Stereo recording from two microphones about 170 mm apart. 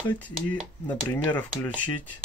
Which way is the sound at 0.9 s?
25° left (ahead or behind).